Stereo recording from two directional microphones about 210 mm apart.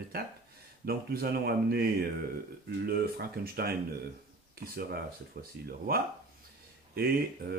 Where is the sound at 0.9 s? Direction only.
45° right (ahead or behind).